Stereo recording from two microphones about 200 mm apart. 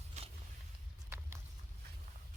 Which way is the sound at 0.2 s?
35° right (ahead or behind).